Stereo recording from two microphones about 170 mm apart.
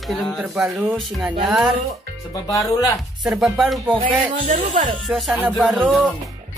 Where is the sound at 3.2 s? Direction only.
Centre (ahead or behind).